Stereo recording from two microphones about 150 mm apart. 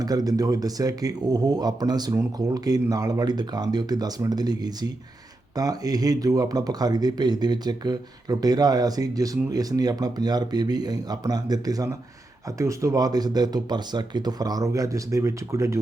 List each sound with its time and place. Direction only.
0.0 s speech: 25° right (ahead or behind)